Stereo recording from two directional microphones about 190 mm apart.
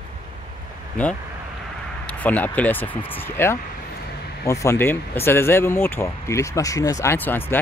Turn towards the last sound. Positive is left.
turn(degrees=10)  # may be behind; listen again after turning